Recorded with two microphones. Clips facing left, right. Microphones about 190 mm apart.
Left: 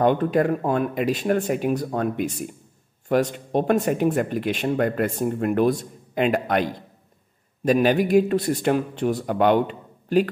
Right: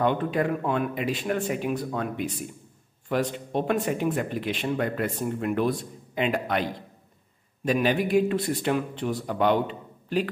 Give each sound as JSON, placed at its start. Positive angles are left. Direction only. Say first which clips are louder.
{"t": 0.0, "sound": "speech", "louder": "left 5 dB", "side_deg": 45}
{"t": 7.6, "sound": "speech", "louder": "left 5 dB", "side_deg": 45}